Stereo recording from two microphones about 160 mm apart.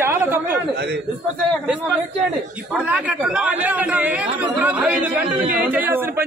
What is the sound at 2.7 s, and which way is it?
A man's voice, 10° right (ahead or behind).